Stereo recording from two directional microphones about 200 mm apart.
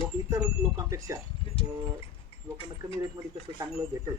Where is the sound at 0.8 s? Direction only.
15° right (ahead or behind).